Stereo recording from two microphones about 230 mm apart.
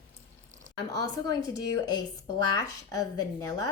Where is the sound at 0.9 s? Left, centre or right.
Centre.